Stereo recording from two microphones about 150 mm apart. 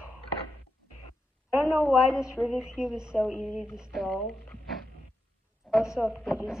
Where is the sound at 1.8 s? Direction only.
5° right (ahead or behind).